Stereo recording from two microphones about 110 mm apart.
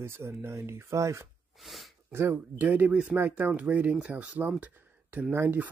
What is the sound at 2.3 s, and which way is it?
Speech, 15° right (ahead or behind).